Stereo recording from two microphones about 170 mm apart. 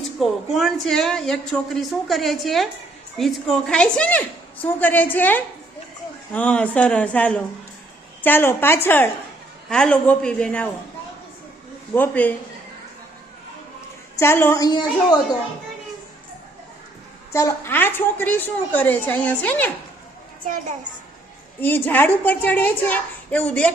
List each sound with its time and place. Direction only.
0.2 s a woman's voice: centre (ahead or behind)
11.9 s a woman's voice: 10° left (ahead or behind)
14.2 s a woman's voice: 15° left (ahead or behind)
17.3 s a woman's voice: 15° left (ahead or behind)
21.6 s a woman's voice: 10° left (ahead or behind)